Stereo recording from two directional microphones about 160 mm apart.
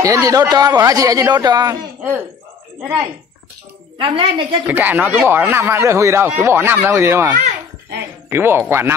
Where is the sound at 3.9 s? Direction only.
35° right (ahead or behind).